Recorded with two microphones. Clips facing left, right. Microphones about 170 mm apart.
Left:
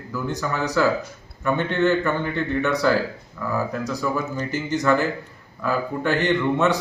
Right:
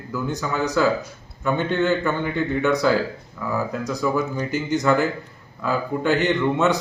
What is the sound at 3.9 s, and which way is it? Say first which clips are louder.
Speech: right 2 dB; 10° right (ahead or behind).